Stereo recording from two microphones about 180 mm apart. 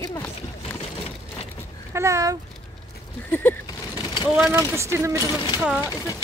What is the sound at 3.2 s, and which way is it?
Speech, 10° left (ahead or behind).